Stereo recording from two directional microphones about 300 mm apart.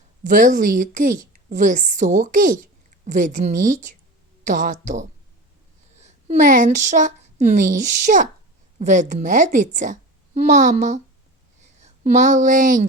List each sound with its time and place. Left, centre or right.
0.3 s a woman's voice: right